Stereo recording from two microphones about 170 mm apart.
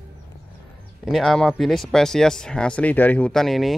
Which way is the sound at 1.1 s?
Centre (ahead or behind).